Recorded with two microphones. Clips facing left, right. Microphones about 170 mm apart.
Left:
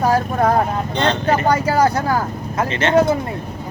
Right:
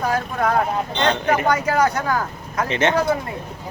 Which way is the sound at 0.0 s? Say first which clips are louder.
Left 5 dB; 35° left (ahead or behind).